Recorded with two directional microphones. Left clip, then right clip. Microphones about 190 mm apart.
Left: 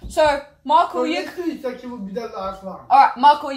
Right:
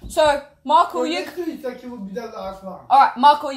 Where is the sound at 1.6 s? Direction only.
Centre (ahead or behind).